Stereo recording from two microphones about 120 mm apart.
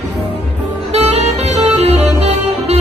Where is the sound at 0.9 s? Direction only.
60° right (ahead or behind).